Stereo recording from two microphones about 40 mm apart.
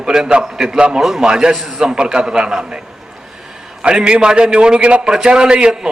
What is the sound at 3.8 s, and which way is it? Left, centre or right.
A man's voice, right.